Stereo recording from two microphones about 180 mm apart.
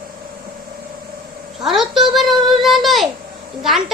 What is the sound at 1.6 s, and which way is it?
A child's voice, centre (ahead or behind).